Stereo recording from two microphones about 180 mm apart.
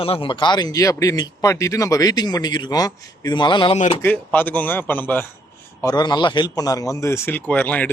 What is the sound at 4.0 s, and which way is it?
Speech, 10° left (ahead or behind).